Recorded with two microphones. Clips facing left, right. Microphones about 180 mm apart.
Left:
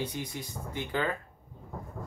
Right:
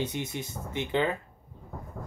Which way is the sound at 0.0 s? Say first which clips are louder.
Right 3 dB; 25° right (ahead or behind).